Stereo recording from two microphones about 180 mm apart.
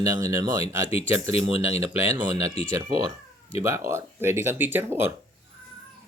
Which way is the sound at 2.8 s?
90° left.